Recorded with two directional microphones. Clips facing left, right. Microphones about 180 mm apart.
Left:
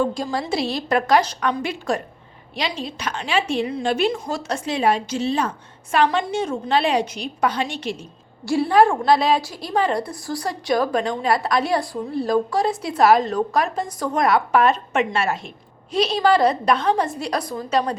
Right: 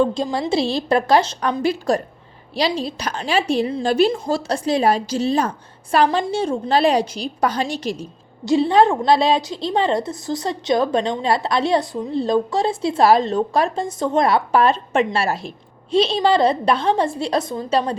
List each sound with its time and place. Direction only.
0.0 s a woman's voice: 25° right (ahead or behind); by 8.0 s 40° right (ahead or behind)
8.4 s a woman's voice: 20° right (ahead or behind)